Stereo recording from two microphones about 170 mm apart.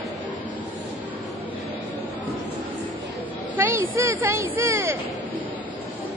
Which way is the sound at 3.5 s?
15° right (ahead or behind).